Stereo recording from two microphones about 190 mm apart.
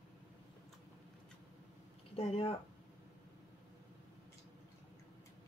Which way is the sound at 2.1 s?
30° left (ahead or behind).